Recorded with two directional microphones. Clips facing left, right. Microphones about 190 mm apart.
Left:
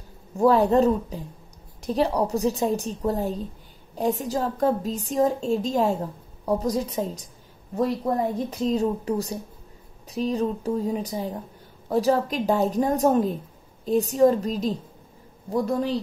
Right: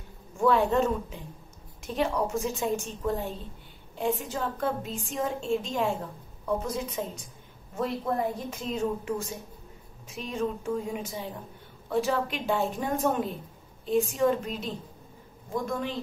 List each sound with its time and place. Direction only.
0.4 s a woman's voice: 40° left (ahead or behind)